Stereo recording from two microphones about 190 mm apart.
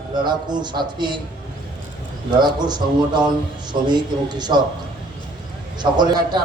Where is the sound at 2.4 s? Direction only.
25° right (ahead or behind).